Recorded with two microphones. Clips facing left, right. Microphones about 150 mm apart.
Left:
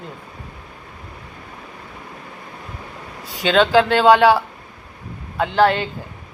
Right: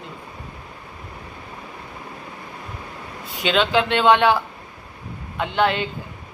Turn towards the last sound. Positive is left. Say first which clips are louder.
# left 4 dB
turn(degrees=35)  # may be behind; listen again after turning